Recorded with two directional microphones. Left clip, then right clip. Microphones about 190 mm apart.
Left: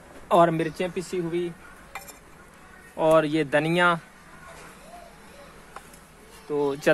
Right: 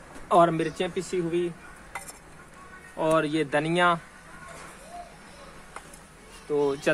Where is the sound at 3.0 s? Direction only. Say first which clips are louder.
Left 4 dB; 30° left (ahead or behind).